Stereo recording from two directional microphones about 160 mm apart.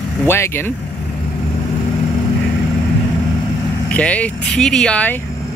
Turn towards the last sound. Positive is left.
turn(degrees=10)  # may be behind; listen again after turning